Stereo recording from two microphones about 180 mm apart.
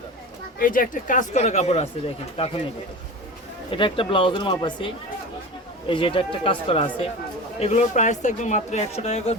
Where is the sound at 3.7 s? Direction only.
30° left (ahead or behind).